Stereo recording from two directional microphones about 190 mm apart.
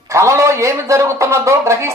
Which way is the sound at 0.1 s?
15° right (ahead or behind).